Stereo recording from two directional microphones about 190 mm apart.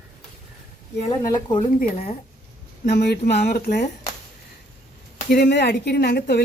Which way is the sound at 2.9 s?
60° left (ahead or behind).